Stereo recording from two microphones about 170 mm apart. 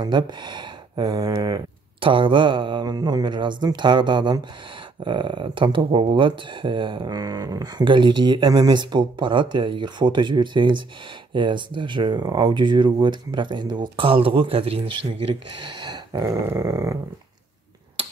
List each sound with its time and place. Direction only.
0.0 s speech: 25° right (ahead or behind)